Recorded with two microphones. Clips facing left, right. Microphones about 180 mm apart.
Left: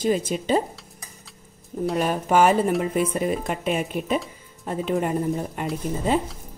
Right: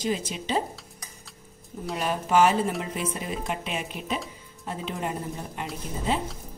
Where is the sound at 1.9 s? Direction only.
50° left (ahead or behind).